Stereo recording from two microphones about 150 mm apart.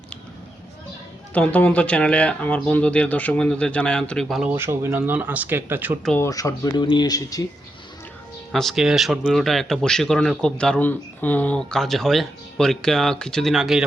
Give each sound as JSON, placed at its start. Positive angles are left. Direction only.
{"t": 1.3, "sound": "speech", "side_deg": 10}
{"t": 4.5, "sound": "speech", "side_deg": -15}
{"t": 6.1, "sound": "speech", "side_deg": 15}
{"t": 8.5, "sound": "speech", "side_deg": 0}